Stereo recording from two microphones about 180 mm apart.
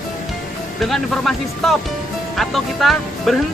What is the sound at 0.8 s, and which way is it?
Speech, centre (ahead or behind).